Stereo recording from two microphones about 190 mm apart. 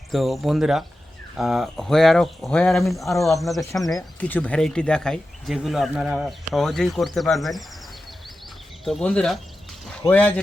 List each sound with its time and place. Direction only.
0.1 s speech: centre (ahead or behind)
3.6 s speech: 15° left (ahead or behind)
3.8 s speech: 5° left (ahead or behind)
8.8 s speech: centre (ahead or behind)